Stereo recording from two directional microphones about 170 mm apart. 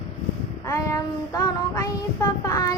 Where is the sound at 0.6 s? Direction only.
15° left (ahead or behind).